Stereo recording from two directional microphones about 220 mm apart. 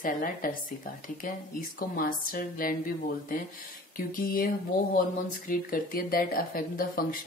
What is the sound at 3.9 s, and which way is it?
Speech, 40° left (ahead or behind).